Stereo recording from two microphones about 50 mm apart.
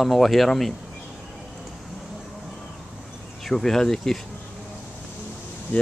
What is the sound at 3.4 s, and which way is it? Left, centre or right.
Speech, centre.